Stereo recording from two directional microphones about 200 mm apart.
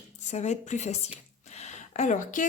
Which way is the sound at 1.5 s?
35° left (ahead or behind).